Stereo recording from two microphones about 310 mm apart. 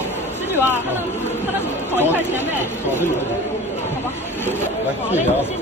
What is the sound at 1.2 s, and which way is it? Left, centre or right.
Speech, centre.